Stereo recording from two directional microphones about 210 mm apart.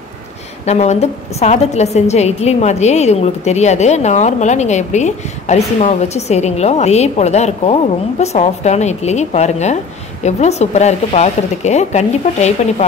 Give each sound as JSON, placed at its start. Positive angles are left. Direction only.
{"t": 0.7, "sound": "a woman's voice", "side_deg": 30}